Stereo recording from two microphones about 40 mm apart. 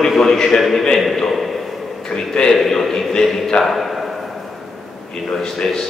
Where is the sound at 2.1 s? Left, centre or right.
Centre.